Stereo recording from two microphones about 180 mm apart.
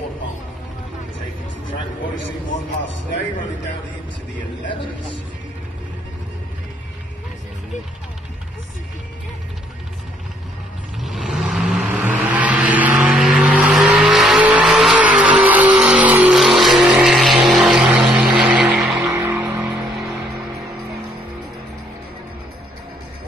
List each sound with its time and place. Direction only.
11.0 s vehicle: centre (ahead or behind)